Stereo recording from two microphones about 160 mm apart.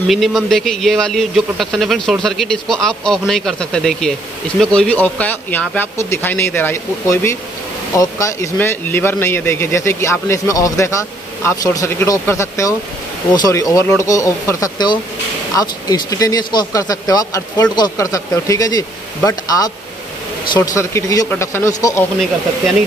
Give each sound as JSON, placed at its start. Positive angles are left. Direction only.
{"t": 0.1, "sound": "speech", "side_deg": 0}